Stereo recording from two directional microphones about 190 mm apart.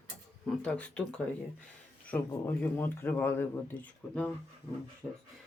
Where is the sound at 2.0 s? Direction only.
10° left (ahead or behind).